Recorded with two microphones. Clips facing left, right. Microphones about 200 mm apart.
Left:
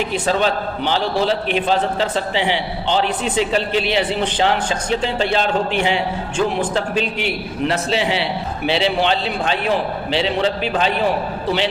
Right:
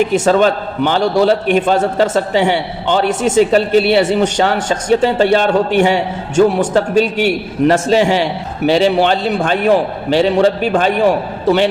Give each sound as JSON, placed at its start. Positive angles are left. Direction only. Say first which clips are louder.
{"t": 0.0, "sound": "a man's voice", "louder": "right 7 dB", "side_deg": -50}